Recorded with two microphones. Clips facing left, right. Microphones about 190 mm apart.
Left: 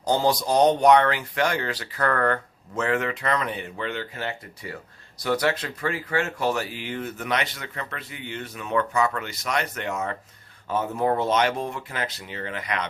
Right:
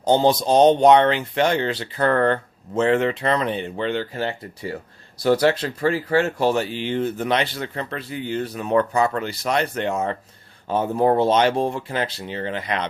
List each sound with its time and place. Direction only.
0.0 s speech: 25° right (ahead or behind)